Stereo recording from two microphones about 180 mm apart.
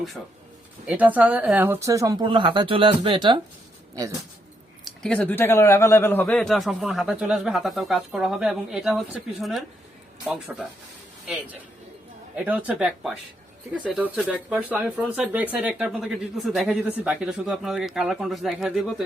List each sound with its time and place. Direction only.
0.9 s speech: 10° right (ahead or behind); by 3.4 s 25° right (ahead or behind)
4.9 s a man's voice: 5° left (ahead or behind)
12.5 s a man's voice: 5° right (ahead or behind)